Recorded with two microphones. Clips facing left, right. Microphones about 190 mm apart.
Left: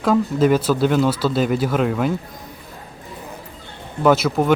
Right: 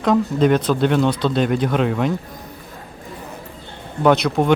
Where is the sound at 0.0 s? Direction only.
5° left (ahead or behind).